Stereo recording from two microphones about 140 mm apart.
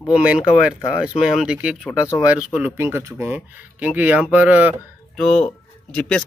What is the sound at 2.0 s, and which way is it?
Speech, 20° left (ahead or behind).